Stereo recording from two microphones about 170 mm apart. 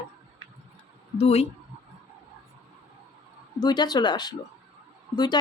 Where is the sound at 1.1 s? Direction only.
40° left (ahead or behind).